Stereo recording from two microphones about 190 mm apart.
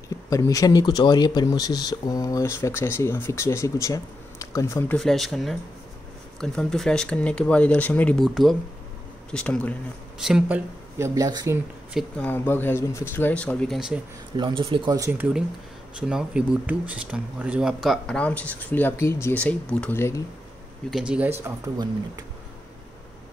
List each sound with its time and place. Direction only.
0.3 s speech: 20° left (ahead or behind)
4.9 s speech: centre (ahead or behind)
11.0 s speech: 20° right (ahead or behind)
11.9 s speech: 5° left (ahead or behind)
14.3 s speech: 25° right (ahead or behind); by 20.2 s 15° left (ahead or behind)
21.1 s speech: 10° right (ahead or behind)